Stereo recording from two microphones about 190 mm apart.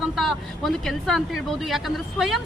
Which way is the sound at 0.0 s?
Centre (ahead or behind).